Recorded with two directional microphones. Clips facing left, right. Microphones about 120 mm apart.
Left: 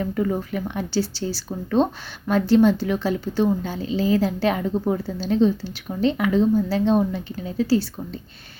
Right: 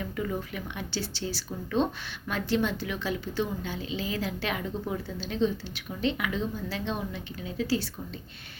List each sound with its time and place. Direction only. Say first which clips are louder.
0.0 s speech: left 9 dB; 40° left (ahead or behind)